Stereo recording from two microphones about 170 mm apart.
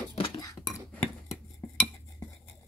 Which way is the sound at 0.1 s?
25° left (ahead or behind).